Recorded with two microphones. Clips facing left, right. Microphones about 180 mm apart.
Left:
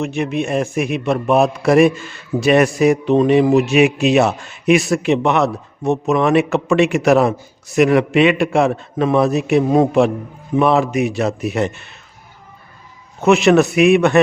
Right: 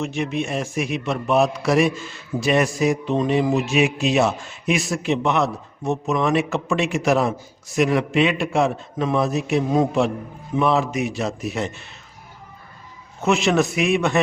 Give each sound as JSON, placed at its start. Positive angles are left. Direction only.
{"t": 0.0, "sound": "a man's voice", "side_deg": 60}
{"t": 13.2, "sound": "a man's voice", "side_deg": 65}